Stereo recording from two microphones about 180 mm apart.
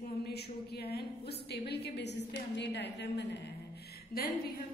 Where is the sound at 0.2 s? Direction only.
65° left (ahead or behind).